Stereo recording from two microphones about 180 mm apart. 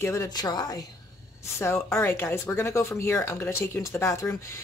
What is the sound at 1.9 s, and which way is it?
Speech, 15° left (ahead or behind).